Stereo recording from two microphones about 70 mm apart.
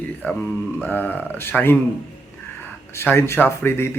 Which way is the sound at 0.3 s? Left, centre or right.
Left.